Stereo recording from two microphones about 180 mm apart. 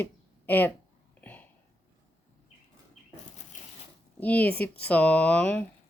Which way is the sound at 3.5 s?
40° left (ahead or behind).